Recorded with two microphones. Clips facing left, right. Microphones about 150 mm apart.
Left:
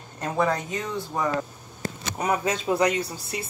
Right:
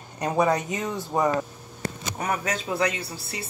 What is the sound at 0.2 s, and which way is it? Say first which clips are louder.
Speech: right 2 dB; 15° right (ahead or behind).